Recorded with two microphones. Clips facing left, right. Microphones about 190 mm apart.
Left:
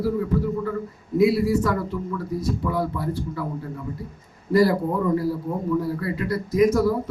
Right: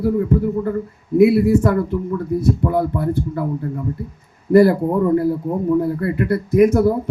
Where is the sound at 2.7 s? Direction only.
55° right (ahead or behind).